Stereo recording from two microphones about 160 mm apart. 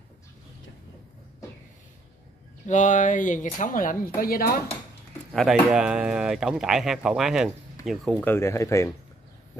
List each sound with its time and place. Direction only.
2.6 s speech: 50° left (ahead or behind); by 4.5 s 65° left (ahead or behind)
5.3 s speech: centre (ahead or behind)
8.2 s speech: 15° left (ahead or behind)